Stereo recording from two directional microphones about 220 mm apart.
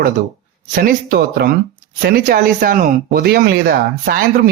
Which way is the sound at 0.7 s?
40° right (ahead or behind).